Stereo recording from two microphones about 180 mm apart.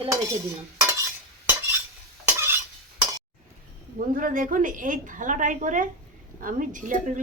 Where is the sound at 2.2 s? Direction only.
10° right (ahead or behind).